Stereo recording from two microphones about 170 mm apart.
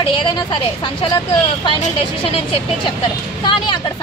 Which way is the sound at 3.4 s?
30° left (ahead or behind).